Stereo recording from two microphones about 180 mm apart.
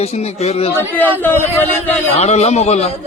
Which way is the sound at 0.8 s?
10° left (ahead or behind).